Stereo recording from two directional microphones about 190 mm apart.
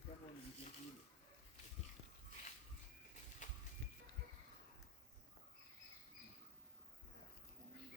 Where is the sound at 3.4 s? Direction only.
40° left (ahead or behind).